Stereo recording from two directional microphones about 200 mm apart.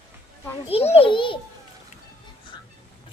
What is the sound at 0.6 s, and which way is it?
Speech, 30° left (ahead or behind).